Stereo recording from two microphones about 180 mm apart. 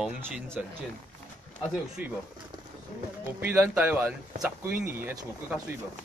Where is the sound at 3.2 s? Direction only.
10° right (ahead or behind).